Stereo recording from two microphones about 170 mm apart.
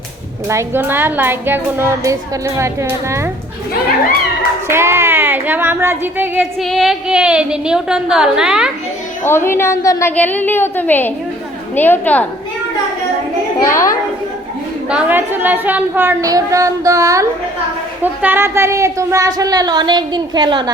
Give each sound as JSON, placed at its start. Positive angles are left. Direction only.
{"t": 0.4, "sound": "a child's voice", "side_deg": -15}
{"t": 4.7, "sound": "a child's voice", "side_deg": -15}
{"t": 6.4, "sound": "a woman's voice", "side_deg": 0}
{"t": 9.2, "sound": "a woman's voice", "side_deg": 15}
{"t": 13.7, "sound": "a woman's voice", "side_deg": 15}
{"t": 14.8, "sound": "a child's voice", "side_deg": -10}